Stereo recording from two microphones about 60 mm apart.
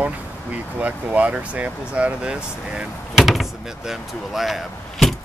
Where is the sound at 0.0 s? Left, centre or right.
Right.